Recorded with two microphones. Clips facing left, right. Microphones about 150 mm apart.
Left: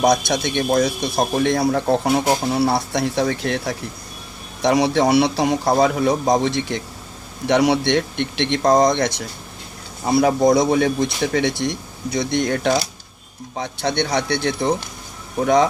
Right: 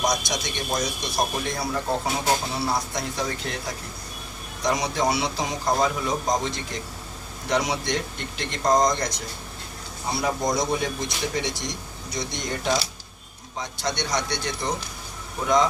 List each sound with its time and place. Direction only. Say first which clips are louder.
0.0 s a man's voice: left 9 dB; 60° left (ahead or behind)